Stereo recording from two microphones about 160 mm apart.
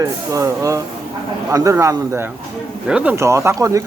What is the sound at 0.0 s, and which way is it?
Speech, 20° right (ahead or behind).